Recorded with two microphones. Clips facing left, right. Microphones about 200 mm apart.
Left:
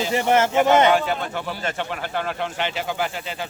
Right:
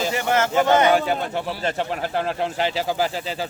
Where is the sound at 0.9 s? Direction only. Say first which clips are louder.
Right 1 dB; 40° right (ahead or behind).